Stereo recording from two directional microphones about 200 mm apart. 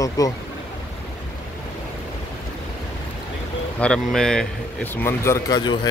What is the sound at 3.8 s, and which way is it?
Speech, 5° left (ahead or behind).